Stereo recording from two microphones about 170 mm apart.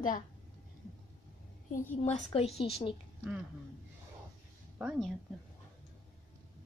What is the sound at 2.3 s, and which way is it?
Speech, 35° left (ahead or behind).